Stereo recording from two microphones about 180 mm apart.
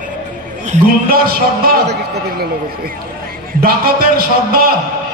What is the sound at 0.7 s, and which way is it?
A man's voice, 55° right (ahead or behind).